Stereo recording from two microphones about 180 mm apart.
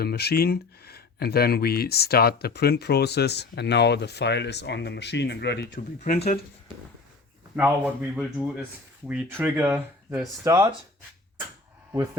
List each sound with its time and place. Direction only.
0.0 s speech: 60° left (ahead or behind)
6.0 s speech: 40° left (ahead or behind)
7.5 s speech: 10° right (ahead or behind)